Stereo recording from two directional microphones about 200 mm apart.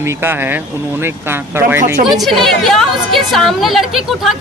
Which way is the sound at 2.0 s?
Centre (ahead or behind).